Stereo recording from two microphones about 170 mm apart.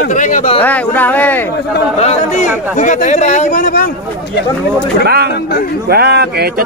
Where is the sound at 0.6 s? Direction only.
10° left (ahead or behind).